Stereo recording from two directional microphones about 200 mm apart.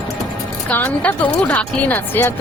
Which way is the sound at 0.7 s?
10° left (ahead or behind).